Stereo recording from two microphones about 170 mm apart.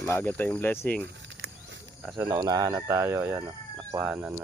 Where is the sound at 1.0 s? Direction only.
90° right.